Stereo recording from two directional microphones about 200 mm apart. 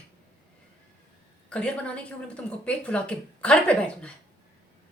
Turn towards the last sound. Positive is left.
turn(degrees=5)  # may be behind; listen again after turning